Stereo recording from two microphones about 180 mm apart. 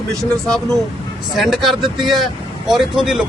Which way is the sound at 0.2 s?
5° left (ahead or behind).